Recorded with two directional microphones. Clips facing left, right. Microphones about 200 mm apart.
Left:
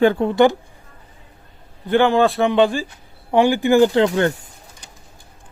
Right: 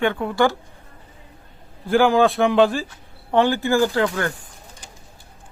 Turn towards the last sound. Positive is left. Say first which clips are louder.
# left 5 dB
turn(degrees=25)  # may be behind; listen again after turning